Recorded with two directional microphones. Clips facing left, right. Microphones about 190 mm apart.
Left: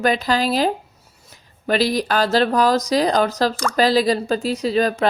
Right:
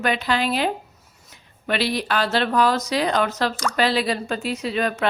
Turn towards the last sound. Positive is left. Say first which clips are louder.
# left 4 dB
turn(degrees=35)  # may be behind; listen again after turning